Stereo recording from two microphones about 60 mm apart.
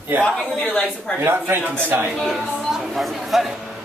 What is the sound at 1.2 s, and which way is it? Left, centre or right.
Speech, right.